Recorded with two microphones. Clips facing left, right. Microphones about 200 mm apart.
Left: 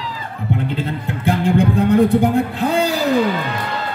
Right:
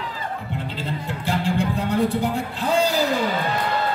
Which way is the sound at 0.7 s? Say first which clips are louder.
Left 5 dB; 55° left (ahead or behind).